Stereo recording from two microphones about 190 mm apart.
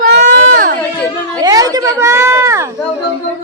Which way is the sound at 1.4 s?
20° right (ahead or behind).